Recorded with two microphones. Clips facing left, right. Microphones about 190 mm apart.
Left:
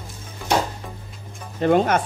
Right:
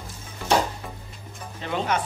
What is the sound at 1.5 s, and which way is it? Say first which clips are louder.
Speech: left 9 dB; 50° left (ahead or behind).